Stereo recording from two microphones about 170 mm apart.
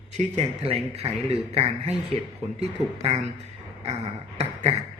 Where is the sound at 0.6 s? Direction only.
35° right (ahead or behind).